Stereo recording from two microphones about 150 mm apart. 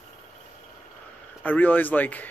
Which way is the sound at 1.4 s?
10° left (ahead or behind).